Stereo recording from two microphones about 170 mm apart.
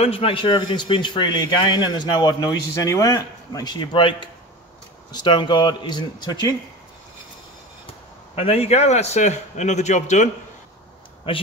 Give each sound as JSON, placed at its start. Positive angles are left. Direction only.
{"t": 0.0, "sound": "speech", "side_deg": 35}
{"t": 8.4, "sound": "a man's voice", "side_deg": 40}
{"t": 11.3, "sound": "speech", "side_deg": 30}